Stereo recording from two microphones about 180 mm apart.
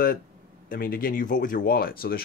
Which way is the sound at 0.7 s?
55° left (ahead or behind).